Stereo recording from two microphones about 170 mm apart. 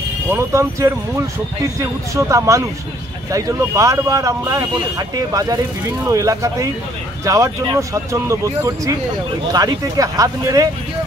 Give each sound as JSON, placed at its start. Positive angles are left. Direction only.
{"t": 0.3, "sound": "speech", "side_deg": -15}